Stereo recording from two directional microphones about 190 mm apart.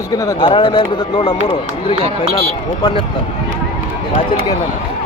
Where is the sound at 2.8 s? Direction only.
20° left (ahead or behind).